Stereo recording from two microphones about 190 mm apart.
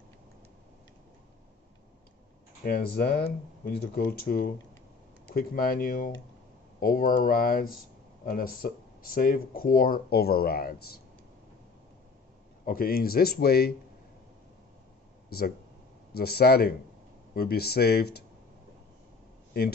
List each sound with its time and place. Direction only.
2.6 s speech: 50° left (ahead or behind)
12.6 s speech: 50° left (ahead or behind)
15.2 s speech: 55° left (ahead or behind)